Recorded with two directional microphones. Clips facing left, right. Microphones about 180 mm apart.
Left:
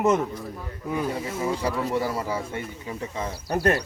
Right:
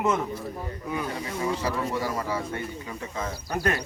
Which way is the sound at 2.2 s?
25° left (ahead or behind).